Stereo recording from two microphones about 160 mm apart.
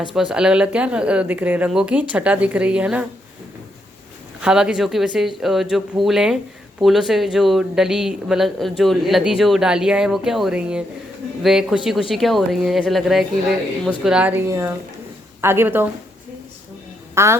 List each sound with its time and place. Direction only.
0.1 s speech: centre (ahead or behind)
4.4 s speech: 5° right (ahead or behind)
17.2 s speech: 15° right (ahead or behind)